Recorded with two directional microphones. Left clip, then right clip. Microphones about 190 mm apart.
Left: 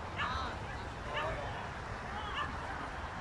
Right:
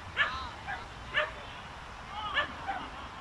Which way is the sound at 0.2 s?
55° right (ahead or behind).